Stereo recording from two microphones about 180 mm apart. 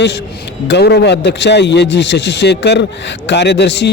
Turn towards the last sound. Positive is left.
turn(degrees=75)  # may be behind; listen again after turning